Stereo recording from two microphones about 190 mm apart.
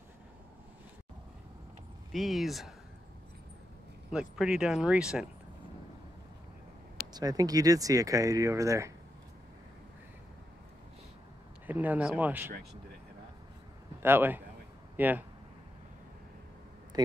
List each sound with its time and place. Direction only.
2.1 s speech: centre (ahead or behind)
4.1 s speech: 5° right (ahead or behind)
7.2 s speech: 20° right (ahead or behind)
11.6 s speech: 10° right (ahead or behind)
14.0 s speech: 10° right (ahead or behind)
16.9 s speech: 20° right (ahead or behind)